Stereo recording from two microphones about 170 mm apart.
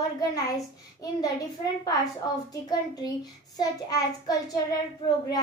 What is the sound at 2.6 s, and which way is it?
Child singing, 20° left (ahead or behind).